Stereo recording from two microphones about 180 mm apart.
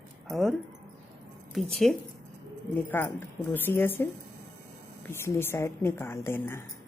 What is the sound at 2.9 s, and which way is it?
Speech, 10° left (ahead or behind).